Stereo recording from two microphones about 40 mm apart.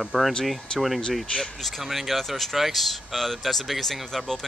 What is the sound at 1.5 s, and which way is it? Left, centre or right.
Speech, centre.